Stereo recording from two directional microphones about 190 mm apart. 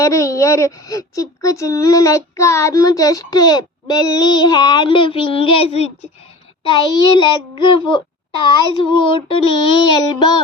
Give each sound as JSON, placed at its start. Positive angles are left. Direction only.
{"t": 0.0, "sound": "speech", "side_deg": 15}
{"t": 6.7, "sound": "child singing", "side_deg": 25}